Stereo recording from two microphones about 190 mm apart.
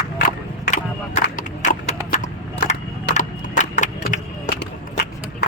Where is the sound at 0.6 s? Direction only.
40° left (ahead or behind).